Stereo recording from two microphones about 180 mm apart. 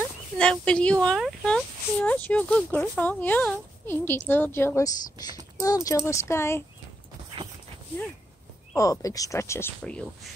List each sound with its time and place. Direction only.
0.4 s speech: 5° left (ahead or behind)
8.7 s speech: 20° left (ahead or behind)